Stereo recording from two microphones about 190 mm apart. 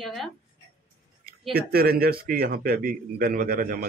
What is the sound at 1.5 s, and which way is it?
A man's voice, 55° right (ahead or behind).